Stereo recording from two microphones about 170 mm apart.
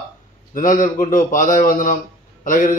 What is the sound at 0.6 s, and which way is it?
A man's voice, 50° left (ahead or behind).